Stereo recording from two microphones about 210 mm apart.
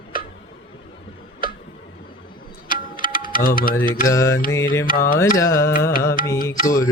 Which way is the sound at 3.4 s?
40° left (ahead or behind).